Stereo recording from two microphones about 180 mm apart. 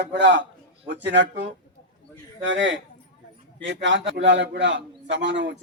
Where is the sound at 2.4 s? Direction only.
90° right.